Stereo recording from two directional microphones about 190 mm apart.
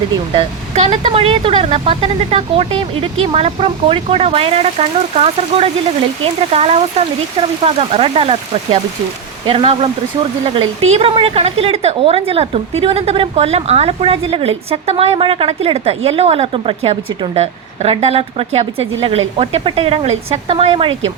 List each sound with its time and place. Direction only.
0.3 s a woman's voice: 35° right (ahead or behind)
10.9 s a woman's voice: 30° right (ahead or behind)